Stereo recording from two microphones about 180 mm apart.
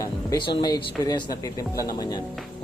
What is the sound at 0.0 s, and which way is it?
Speech, 20° left (ahead or behind).